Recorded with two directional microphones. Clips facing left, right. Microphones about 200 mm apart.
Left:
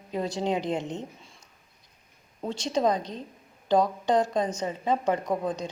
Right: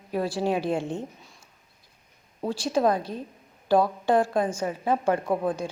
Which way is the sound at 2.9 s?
10° right (ahead or behind).